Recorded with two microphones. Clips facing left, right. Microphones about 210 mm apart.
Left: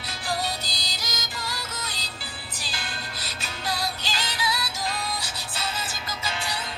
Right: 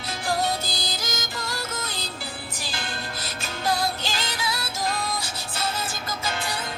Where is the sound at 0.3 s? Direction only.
50° right (ahead or behind).